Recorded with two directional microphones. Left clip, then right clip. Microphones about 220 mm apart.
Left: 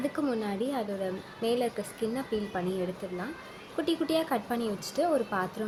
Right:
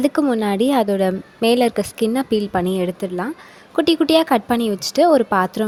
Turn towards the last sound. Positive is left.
turn(degrees=-45)  # may be behind; listen again after turning